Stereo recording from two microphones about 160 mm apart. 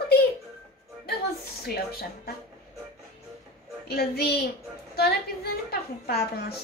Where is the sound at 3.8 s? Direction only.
80° left.